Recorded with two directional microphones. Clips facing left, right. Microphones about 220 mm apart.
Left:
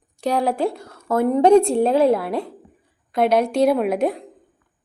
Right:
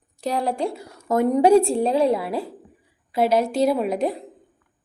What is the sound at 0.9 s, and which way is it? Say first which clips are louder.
A woman's voice: right 2 dB; 15° right (ahead or behind).